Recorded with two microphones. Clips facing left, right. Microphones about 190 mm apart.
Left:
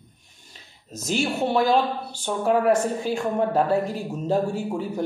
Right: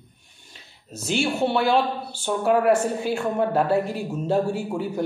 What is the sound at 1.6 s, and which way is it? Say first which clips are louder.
Speech: even; 35° left (ahead or behind).